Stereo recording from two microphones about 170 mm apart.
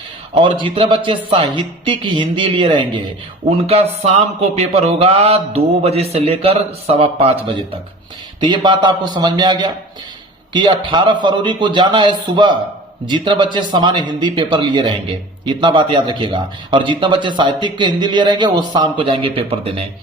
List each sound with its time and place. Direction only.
0.4 s speech: 30° right (ahead or behind)
13.1 s speech: 30° right (ahead or behind)